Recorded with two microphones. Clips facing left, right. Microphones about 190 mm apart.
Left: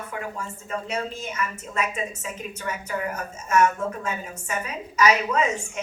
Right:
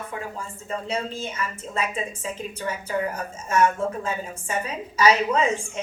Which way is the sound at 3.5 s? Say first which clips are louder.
Even; 30° right (ahead or behind).